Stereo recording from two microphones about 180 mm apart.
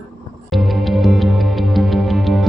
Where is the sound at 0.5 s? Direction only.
Centre (ahead or behind).